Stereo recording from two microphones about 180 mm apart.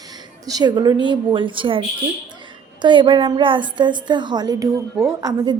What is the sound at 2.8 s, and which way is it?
A woman's voice, 25° right (ahead or behind).